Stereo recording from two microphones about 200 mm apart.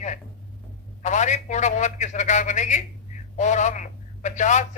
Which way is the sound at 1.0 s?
35° left (ahead or behind).